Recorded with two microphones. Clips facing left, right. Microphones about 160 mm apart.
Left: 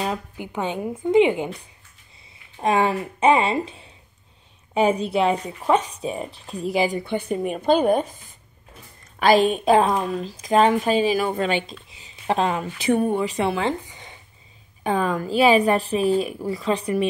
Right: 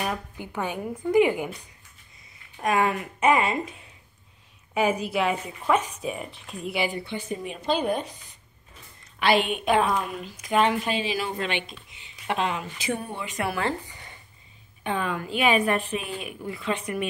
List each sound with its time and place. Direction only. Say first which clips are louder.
0.0 s a woman's voice: left 3 dB; 20° left (ahead or behind)
2.6 s a woman's voice: left 4 dB; 30° left (ahead or behind)
7.1 s a woman's voice: left 8 dB; 55° left (ahead or behind)
11.9 s speech: left 6 dB; 35° left (ahead or behind)
12.7 s speech: left 10 dB; 55° left (ahead or behind)
13.3 s speech: left 5 dB; 25° left (ahead or behind)
14.8 s a woman's voice: left 6 dB; 40° left (ahead or behind)